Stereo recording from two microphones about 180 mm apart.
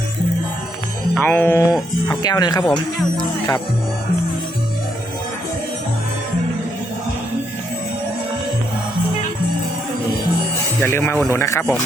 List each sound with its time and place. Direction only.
1.1 s music: 5° left (ahead or behind)
2.2 s speech: 20° left (ahead or behind)
10.8 s music: 15° left (ahead or behind)